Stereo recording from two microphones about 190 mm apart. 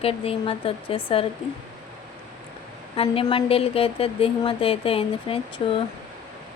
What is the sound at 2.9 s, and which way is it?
Speech, 30° left (ahead or behind).